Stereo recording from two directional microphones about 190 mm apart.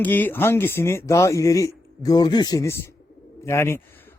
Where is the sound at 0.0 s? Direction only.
10° left (ahead or behind).